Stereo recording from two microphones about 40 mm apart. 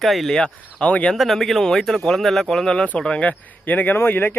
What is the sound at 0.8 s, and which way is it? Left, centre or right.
Speech, left.